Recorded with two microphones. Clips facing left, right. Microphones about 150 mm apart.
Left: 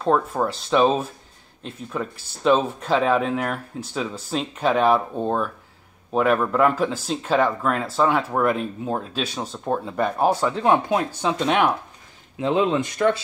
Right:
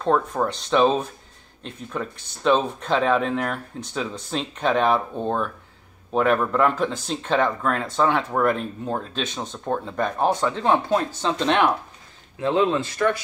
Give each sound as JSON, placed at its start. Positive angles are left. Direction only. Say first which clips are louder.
{"t": 0.0, "sound": "speech", "louder": "left 1 dB", "side_deg": 5}
{"t": 12.4, "sound": "speech", "louder": "even", "side_deg": 20}